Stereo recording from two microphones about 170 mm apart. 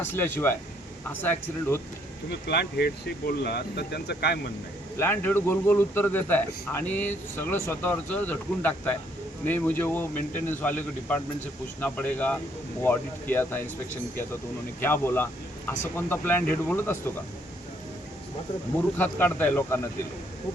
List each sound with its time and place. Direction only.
0.0 s a man's voice: 10° left (ahead or behind)
2.5 s speech: 75° left (ahead or behind)
4.9 s a man's voice: 10° left (ahead or behind)
14.8 s a man's voice: 15° left (ahead or behind)
18.9 s a man's voice: 10° left (ahead or behind)